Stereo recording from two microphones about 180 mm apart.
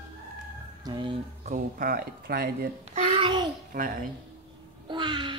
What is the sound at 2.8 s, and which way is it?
Speech, 35° right (ahead or behind).